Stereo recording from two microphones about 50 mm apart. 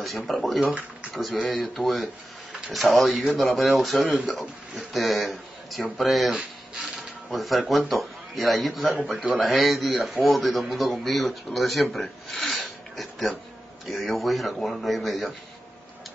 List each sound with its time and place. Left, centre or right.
0.0 s speech: centre
6.8 s mechanisms: centre
7.9 s speech: centre
9.1 s a man's voice: centre
9.4 s speech: centre
12.6 s a sound: centre
13.8 s speech: centre